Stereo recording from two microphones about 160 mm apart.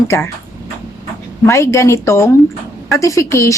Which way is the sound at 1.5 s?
20° left (ahead or behind).